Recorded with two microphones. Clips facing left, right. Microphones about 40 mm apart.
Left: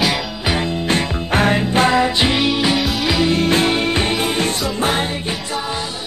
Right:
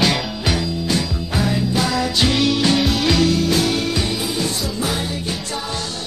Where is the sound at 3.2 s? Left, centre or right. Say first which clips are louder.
Left 2 dB; left.